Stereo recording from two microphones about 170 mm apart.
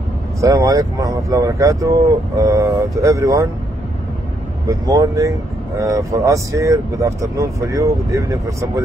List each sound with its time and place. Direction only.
0.4 s speech: 20° right (ahead or behind)
4.6 s speech: 20° right (ahead or behind)